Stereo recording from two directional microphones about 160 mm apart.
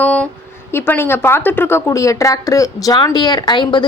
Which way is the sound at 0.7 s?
15° left (ahead or behind).